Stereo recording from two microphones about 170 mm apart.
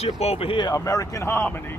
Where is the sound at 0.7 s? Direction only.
20° left (ahead or behind).